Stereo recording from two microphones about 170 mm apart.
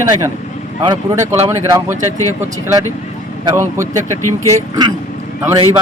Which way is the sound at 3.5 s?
15° right (ahead or behind).